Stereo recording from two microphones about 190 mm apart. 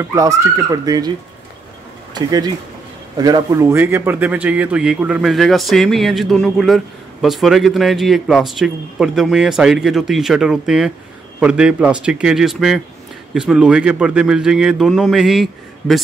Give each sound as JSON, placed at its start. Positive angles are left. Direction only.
{"t": 0.0, "sound": "speech", "side_deg": -15}
{"t": 2.1, "sound": "speech", "side_deg": -20}